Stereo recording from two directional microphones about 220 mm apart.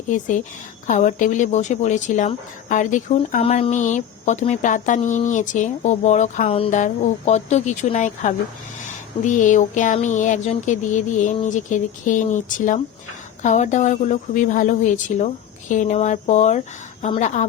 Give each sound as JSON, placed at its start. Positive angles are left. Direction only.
{"t": 0.1, "sound": "speech", "side_deg": 35}